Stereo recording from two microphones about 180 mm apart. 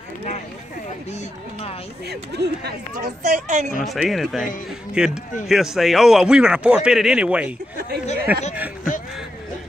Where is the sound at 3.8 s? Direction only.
Centre (ahead or behind).